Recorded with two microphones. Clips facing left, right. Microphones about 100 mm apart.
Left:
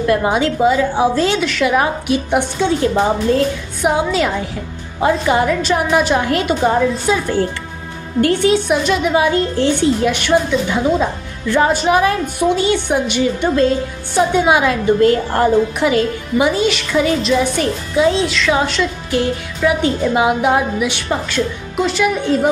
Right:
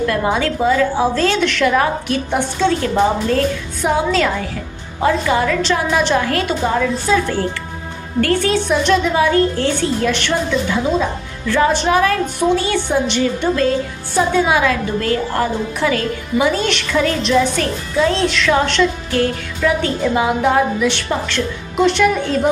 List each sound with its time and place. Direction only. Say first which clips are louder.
0.0 s a woman's voice: left 2 dB; 20° left (ahead or behind)
5.6 s a woman's voice: left 2 dB; 10° left (ahead or behind)
6.1 s a woman's voice: left 1 dB; 20° left (ahead or behind)
11.7 s a woman's voice: left 1 dB; 10° left (ahead or behind)
12.0 s a woman's voice: even; 20° left (ahead or behind)
21.8 s a woman's voice: right 3 dB; 5° left (ahead or behind)